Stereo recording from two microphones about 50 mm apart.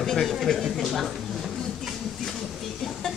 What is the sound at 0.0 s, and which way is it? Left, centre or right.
Speech, centre.